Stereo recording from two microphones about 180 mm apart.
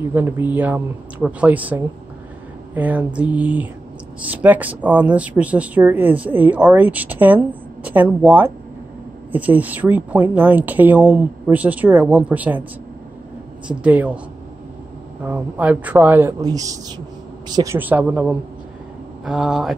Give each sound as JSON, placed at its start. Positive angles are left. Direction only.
{"t": 0.0, "sound": "speech", "side_deg": -10}
{"t": 13.7, "sound": "speech", "side_deg": -5}
{"t": 15.2, "sound": "speech", "side_deg": -10}
{"t": 17.7, "sound": "speech", "side_deg": -10}